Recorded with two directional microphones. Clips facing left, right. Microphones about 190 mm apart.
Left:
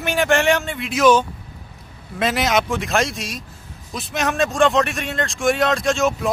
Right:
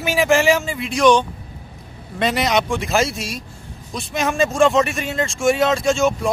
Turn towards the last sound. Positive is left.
turn(degrees=0)  # may be behind; listen again after turning